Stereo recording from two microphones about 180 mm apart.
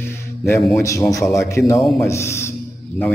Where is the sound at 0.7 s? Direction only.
15° left (ahead or behind).